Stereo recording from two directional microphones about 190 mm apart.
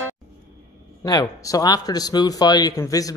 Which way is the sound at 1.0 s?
20° left (ahead or behind).